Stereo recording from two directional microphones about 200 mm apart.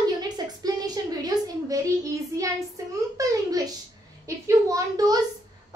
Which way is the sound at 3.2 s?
20° right (ahead or behind).